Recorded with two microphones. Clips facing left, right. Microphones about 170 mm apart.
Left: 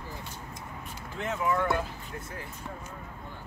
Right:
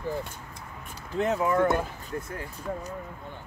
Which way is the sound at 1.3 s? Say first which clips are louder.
Right 4 dB; 40° right (ahead or behind).